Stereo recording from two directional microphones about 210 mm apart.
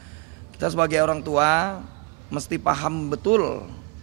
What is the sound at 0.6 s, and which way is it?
A man's voice, 10° right (ahead or behind).